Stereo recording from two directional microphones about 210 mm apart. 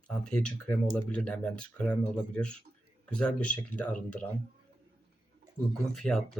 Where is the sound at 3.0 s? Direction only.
5° left (ahead or behind).